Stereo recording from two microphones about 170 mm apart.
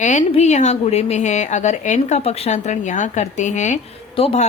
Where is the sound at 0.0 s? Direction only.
45° left (ahead or behind).